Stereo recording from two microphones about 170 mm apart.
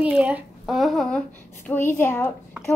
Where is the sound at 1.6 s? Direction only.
10° left (ahead or behind).